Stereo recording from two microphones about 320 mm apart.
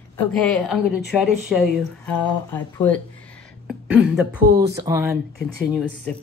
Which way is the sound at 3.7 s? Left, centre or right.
Centre.